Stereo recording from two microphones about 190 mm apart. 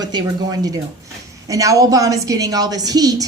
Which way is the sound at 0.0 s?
20° right (ahead or behind).